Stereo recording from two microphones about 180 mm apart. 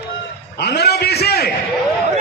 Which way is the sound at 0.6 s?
65° left (ahead or behind).